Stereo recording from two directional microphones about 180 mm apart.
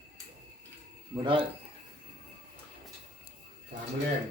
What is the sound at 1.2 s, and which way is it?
Speech, 25° right (ahead or behind).